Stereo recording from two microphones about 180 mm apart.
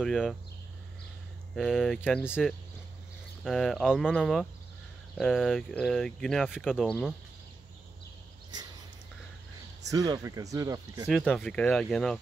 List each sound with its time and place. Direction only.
0.0 s speech: centre (ahead or behind)
1.5 s speech: centre (ahead or behind)
2.2 s speech: 5° right (ahead or behind)
9.8 s speech: 20° right (ahead or behind)
11.1 s speech: centre (ahead or behind)